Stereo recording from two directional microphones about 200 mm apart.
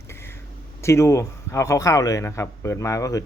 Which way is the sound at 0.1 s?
10° left (ahead or behind).